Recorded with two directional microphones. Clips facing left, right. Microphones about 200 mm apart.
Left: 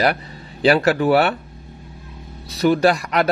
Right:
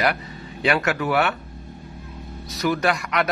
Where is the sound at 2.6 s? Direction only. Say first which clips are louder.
Left 6 dB; 30° left (ahead or behind).